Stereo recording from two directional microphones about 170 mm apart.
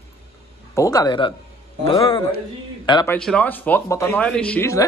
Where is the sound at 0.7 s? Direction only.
20° left (ahead or behind).